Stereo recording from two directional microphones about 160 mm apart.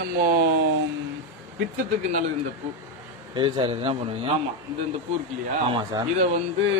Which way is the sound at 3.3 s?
30° right (ahead or behind).